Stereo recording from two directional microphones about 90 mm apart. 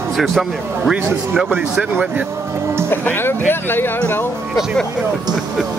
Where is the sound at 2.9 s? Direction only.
25° left (ahead or behind).